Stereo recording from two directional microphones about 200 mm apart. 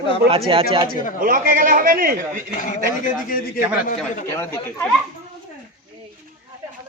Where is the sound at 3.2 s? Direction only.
50° left (ahead or behind).